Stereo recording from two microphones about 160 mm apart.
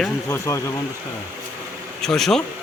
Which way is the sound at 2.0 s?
Centre (ahead or behind).